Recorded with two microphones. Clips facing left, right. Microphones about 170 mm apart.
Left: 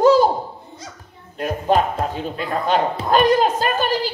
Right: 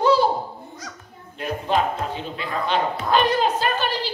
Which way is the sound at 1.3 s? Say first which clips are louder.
Left 4 dB; 45° left (ahead or behind).